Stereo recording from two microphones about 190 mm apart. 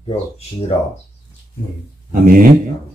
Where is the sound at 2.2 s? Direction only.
50° right (ahead or behind).